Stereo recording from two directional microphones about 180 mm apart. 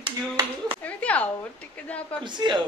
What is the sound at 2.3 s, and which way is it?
Speech, 25° right (ahead or behind).